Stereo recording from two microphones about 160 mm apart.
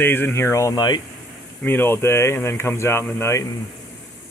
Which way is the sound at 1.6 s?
15° left (ahead or behind).